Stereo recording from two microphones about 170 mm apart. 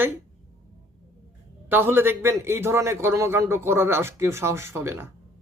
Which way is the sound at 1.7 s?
10° right (ahead or behind).